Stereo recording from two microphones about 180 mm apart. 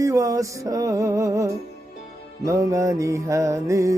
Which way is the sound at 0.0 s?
20° right (ahead or behind).